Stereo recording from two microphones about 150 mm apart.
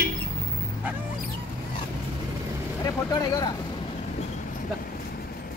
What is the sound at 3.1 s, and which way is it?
Speech, 25° left (ahead or behind).